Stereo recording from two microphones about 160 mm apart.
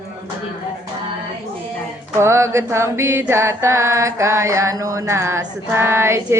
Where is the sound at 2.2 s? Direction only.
15° right (ahead or behind).